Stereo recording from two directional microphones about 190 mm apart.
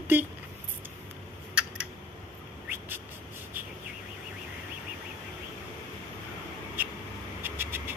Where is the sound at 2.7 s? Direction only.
10° right (ahead or behind).